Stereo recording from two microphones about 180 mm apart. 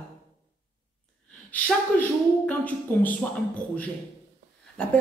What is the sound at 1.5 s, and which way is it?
A woman's voice, 10° left (ahead or behind).